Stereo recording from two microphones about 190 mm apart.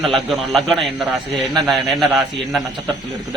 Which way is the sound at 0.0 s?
Centre (ahead or behind).